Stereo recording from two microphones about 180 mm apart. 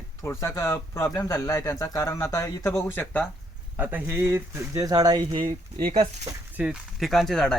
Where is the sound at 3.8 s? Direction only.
10° right (ahead or behind).